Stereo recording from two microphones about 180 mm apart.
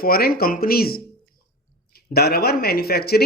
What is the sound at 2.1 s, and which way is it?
Speech, 60° left (ahead or behind).